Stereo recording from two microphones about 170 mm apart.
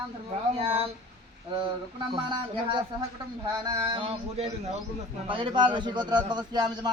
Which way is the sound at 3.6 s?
30° right (ahead or behind).